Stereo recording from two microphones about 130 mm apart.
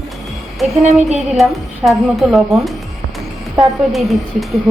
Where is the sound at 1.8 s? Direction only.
Centre (ahead or behind).